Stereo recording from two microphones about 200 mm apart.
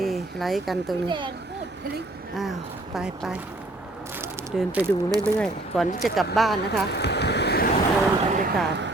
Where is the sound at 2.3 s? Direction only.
Centre (ahead or behind).